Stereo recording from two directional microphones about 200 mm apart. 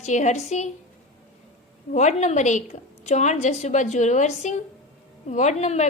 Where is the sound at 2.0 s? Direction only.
35° left (ahead or behind).